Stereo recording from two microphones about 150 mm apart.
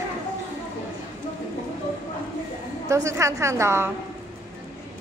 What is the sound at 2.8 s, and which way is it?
A woman's voice, 20° right (ahead or behind).